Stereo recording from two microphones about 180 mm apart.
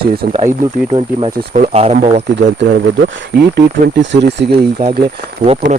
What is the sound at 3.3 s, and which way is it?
Speech, 70° right (ahead or behind).